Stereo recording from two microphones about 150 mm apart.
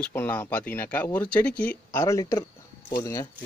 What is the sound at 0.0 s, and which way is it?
Speech, 15° left (ahead or behind).